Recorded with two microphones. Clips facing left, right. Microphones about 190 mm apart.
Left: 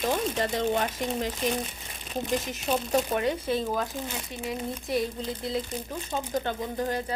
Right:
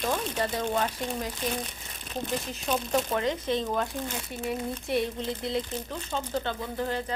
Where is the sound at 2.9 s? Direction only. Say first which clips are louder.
Left 1 dB; 10° left (ahead or behind).